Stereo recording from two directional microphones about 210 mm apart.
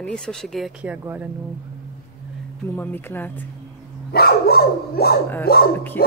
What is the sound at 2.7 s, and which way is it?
Speech, 10° left (ahead or behind).